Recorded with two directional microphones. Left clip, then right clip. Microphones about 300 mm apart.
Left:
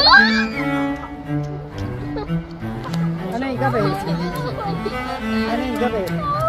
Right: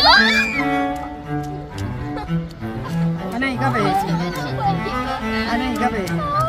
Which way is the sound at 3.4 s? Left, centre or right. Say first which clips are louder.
Right 1 dB; right.